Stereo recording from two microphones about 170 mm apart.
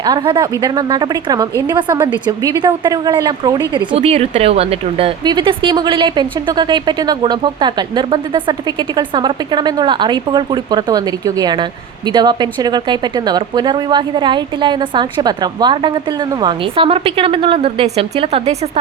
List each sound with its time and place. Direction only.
0.0 s a woman's voice: 25° right (ahead or behind)
3.9 s a woman's voice: 35° right (ahead or behind)